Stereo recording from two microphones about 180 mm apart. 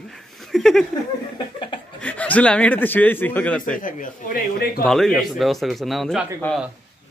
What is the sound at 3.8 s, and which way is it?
Speech, 50° left (ahead or behind).